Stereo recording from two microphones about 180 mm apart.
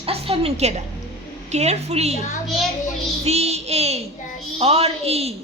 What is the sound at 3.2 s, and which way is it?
A woman's voice, 35° right (ahead or behind).